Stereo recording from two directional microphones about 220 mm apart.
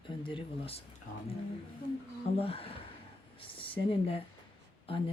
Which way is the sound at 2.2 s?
25° left (ahead or behind).